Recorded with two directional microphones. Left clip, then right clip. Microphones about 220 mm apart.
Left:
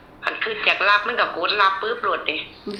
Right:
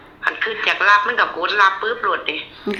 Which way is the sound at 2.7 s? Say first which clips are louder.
Right 7 dB; 35° right (ahead or behind).